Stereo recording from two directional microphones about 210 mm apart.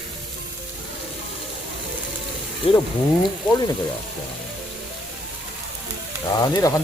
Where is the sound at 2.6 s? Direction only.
30° left (ahead or behind).